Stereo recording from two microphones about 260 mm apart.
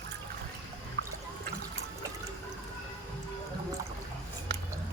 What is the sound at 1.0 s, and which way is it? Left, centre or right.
Water, right.